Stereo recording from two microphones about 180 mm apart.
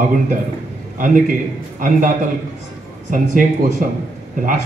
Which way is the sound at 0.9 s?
50° right (ahead or behind).